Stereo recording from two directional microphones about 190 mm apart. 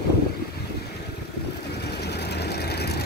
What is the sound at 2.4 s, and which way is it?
Vehicle, 60° left (ahead or behind).